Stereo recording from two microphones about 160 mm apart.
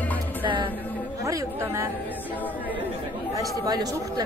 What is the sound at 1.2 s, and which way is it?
Speech, 20° right (ahead or behind).